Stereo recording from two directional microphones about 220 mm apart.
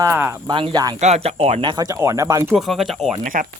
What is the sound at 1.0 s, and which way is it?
Speech, 30° right (ahead or behind).